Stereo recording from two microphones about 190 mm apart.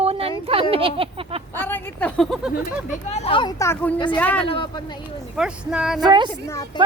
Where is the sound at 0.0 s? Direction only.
30° right (ahead or behind).